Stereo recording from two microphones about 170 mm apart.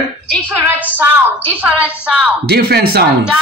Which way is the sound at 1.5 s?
10° right (ahead or behind).